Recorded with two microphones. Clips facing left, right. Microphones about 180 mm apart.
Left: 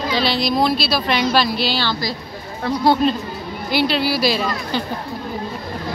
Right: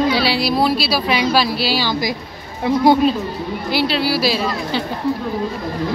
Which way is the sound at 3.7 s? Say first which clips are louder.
Even; centre (ahead or behind).